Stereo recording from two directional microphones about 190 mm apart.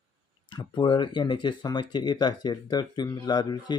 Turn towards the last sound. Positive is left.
turn(degrees=20)  # may be behind; listen again after turning